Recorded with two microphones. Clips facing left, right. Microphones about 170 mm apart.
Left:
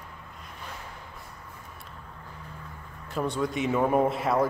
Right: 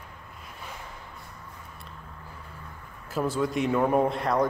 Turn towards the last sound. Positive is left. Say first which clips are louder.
# even
turn(degrees=5)  # may be behind; listen again after turning